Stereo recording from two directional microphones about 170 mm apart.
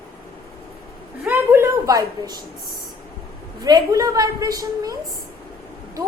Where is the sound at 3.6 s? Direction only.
20° right (ahead or behind).